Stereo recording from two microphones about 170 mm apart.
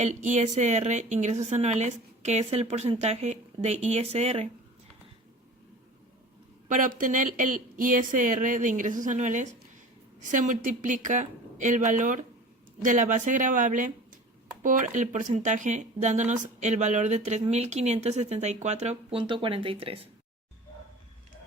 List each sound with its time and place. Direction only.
0.0 s speech: 45° right (ahead or behind)
6.7 s speech: 50° right (ahead or behind)
19.2 s speech: 30° right (ahead or behind)